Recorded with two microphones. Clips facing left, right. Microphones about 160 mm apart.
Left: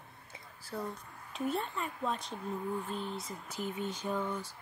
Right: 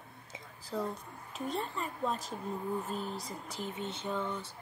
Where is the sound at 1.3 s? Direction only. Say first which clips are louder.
Left 2 dB; centre (ahead or behind).